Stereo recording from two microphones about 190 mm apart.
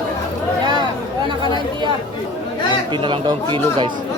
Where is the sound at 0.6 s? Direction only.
25° right (ahead or behind).